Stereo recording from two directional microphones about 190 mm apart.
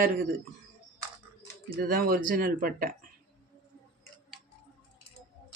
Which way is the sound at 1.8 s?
50° right (ahead or behind).